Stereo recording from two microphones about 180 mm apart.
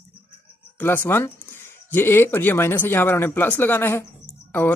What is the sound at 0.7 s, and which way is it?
Speech, 10° left (ahead or behind).